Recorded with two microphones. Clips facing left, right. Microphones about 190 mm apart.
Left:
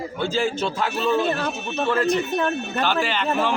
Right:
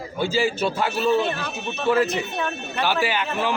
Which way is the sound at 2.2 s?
45° left (ahead or behind).